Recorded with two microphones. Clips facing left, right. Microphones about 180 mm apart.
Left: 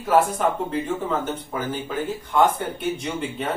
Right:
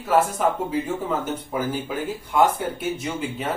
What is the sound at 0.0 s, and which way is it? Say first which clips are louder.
Speech: left 1 dB; centre (ahead or behind).